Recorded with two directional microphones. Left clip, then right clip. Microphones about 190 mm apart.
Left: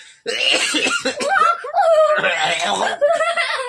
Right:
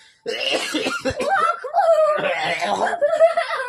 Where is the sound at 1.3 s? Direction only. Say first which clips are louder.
Left 4 dB; 20° left (ahead or behind).